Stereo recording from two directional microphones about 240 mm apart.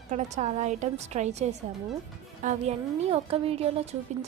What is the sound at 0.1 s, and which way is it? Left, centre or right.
A woman's voice, right.